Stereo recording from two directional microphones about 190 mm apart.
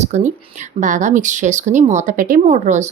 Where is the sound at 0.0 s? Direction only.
40° right (ahead or behind).